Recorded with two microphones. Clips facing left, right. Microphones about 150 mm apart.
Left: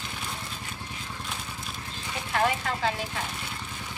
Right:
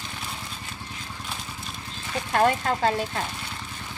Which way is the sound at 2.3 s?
45° right (ahead or behind).